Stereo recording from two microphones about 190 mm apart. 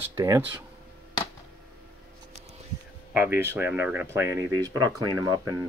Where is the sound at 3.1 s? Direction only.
10° right (ahead or behind).